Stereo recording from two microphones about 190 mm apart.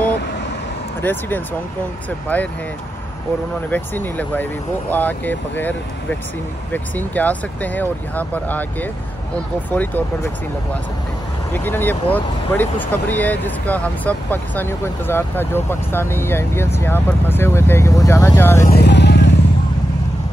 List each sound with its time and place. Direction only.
1.0 s speech: 10° left (ahead or behind)
3.7 s speech: 10° left (ahead or behind)
9.7 s speech: 10° left (ahead or behind)
11.5 s speech: 10° left (ahead or behind)
18.6 s vehicle: 55° left (ahead or behind)